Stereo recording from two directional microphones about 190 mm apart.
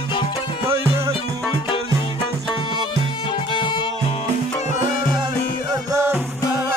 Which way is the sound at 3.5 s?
25° left (ahead or behind).